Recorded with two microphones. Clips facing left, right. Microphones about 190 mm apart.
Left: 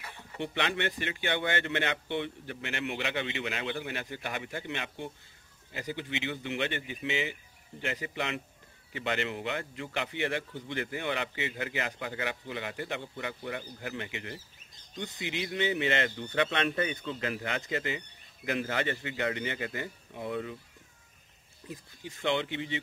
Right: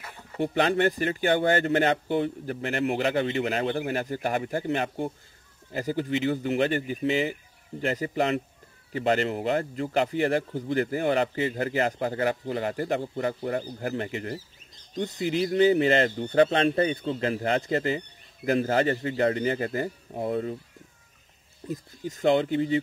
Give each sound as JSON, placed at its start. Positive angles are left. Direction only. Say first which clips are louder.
{"t": 0.4, "sound": "speech", "louder": "right 9 dB", "side_deg": -40}
{"t": 21.6, "sound": "speech", "louder": "right 10 dB", "side_deg": -40}